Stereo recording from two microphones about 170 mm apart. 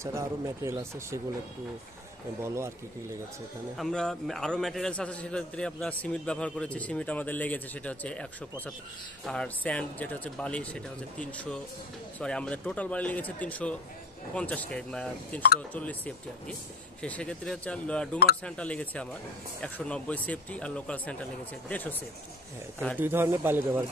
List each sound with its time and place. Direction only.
0.0 s speech: 15° right (ahead or behind)
2.4 s speech: 15° right (ahead or behind)
3.7 s a man's voice: 5° left (ahead or behind)
17.0 s a man's voice: 5° left (ahead or behind)
22.9 s speech: 10° right (ahead or behind)